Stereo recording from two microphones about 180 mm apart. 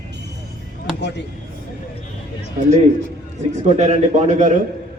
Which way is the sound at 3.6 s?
40° right (ahead or behind).